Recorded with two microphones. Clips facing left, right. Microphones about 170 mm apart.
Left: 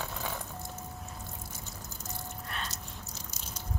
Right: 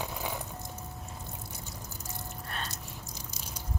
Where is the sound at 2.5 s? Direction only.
40° right (ahead or behind).